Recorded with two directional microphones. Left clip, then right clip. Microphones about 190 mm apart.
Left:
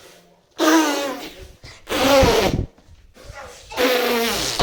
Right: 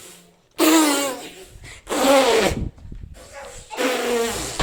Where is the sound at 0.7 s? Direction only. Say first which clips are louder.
Even; 30° right (ahead or behind).